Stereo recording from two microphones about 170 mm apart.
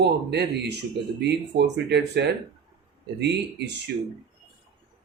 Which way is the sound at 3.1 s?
90° right.